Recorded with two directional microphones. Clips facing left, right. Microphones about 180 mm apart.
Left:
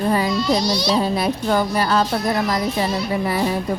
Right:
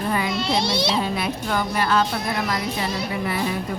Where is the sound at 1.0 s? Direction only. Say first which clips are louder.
Left 5 dB; 35° left (ahead or behind).